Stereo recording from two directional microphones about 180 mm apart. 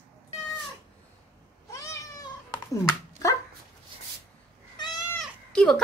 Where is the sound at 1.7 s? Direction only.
15° left (ahead or behind).